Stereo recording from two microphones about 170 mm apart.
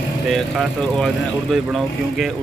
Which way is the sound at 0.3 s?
Centre (ahead or behind).